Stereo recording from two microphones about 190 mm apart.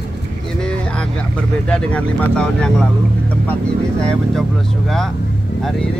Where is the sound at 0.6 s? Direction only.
5° left (ahead or behind).